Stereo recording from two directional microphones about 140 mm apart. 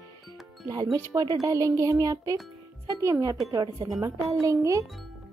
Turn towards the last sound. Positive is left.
turn(degrees=-20)  # may be behind; listen again after turning